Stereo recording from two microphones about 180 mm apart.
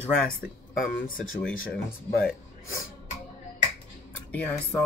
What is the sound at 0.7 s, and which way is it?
Speech, 50° left (ahead or behind).